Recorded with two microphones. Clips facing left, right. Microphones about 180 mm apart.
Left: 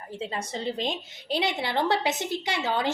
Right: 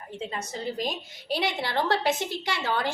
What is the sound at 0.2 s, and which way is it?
A woman's voice, 30° left (ahead or behind).